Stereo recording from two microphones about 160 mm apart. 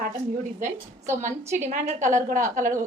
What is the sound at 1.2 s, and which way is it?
A woman's voice, 50° right (ahead or behind).